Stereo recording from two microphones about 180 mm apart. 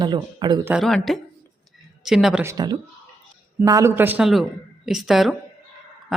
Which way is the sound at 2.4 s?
20° right (ahead or behind).